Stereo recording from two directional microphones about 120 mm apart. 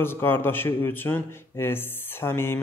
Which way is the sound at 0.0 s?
20° left (ahead or behind).